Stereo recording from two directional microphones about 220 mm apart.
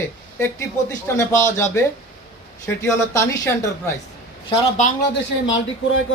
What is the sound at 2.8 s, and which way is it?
Speech, 15° left (ahead or behind).